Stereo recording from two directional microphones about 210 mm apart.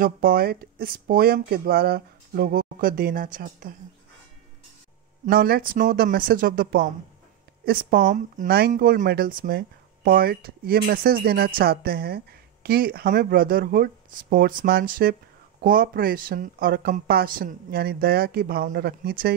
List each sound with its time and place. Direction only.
0.0 s speech: 45° right (ahead or behind)
5.2 s speech: 45° right (ahead or behind)